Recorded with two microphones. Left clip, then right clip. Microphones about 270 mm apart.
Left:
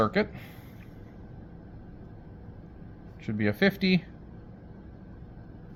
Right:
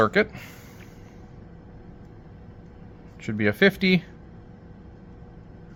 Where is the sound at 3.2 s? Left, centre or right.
Right.